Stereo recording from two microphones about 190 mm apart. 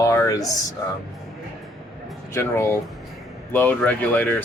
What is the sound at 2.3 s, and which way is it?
Speech, 15° left (ahead or behind).